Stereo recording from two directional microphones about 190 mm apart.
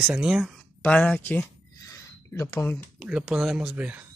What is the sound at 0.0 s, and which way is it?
Speech, 5° right (ahead or behind).